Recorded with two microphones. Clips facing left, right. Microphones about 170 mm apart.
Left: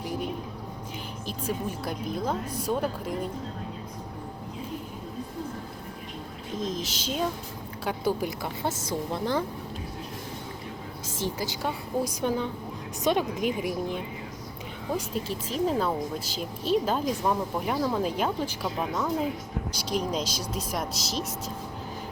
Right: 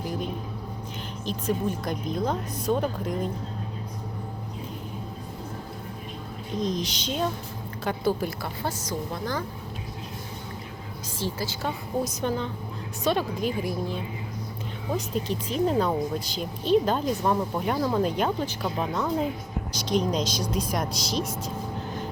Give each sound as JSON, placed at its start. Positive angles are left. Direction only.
{"t": 1.2, "sound": "speech", "side_deg": 10}
{"t": 6.6, "sound": "speech", "side_deg": 0}
{"t": 8.8, "sound": "a woman's voice", "side_deg": 25}
{"t": 11.2, "sound": "speech", "side_deg": 15}
{"t": 14.9, "sound": "speech", "side_deg": 5}